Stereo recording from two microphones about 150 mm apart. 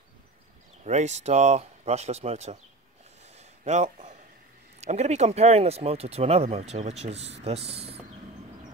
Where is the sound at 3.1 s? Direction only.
45° right (ahead or behind).